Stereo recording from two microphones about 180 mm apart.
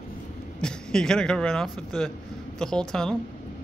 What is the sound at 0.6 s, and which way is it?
Speech, 5° left (ahead or behind).